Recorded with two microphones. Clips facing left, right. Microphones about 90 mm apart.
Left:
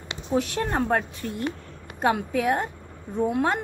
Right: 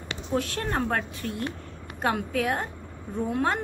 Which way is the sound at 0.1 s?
20° left (ahead or behind).